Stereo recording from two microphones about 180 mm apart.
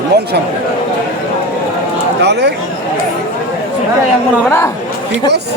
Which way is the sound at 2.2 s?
70° right (ahead or behind).